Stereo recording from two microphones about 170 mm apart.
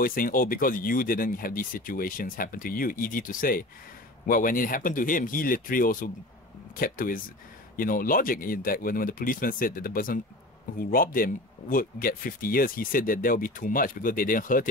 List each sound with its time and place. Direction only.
0.0 s speech: 60° left (ahead or behind)